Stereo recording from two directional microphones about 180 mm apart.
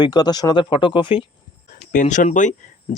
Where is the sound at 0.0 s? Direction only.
20° left (ahead or behind).